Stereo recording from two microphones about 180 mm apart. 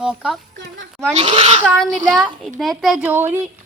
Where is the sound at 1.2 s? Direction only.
35° right (ahead or behind).